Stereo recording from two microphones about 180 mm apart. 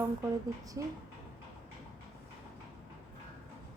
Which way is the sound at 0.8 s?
20° right (ahead or behind).